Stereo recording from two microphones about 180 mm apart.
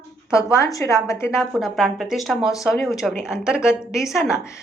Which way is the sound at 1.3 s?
Centre (ahead or behind).